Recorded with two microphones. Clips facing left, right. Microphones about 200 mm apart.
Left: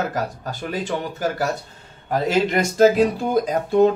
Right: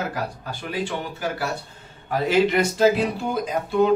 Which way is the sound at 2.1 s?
45° left (ahead or behind).